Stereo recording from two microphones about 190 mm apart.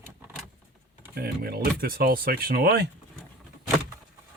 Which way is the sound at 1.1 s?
55° right (ahead or behind).